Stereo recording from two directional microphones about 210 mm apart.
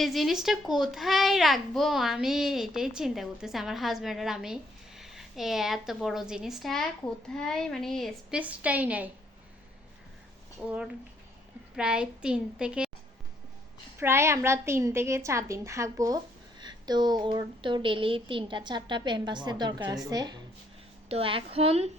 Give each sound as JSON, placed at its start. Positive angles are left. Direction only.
{"t": 0.0, "sound": "a child's voice", "side_deg": 0}
{"t": 11.8, "sound": "a child's voice", "side_deg": -5}
{"t": 14.0, "sound": "a woman's voice", "side_deg": -10}